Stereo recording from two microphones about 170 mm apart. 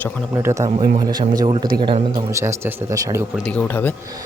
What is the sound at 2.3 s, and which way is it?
Speech, 15° right (ahead or behind).